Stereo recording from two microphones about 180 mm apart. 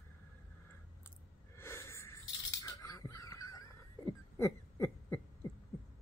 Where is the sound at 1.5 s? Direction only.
15° left (ahead or behind).